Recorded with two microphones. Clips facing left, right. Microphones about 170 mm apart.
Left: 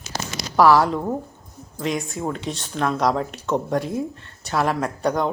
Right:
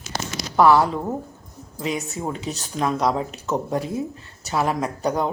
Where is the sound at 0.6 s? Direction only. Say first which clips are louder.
Even; centre (ahead or behind).